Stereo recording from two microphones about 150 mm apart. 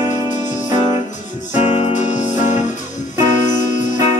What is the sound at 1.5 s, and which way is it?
Music, 45° left (ahead or behind).